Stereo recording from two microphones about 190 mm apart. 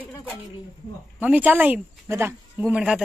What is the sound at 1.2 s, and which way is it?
Speech, 10° right (ahead or behind).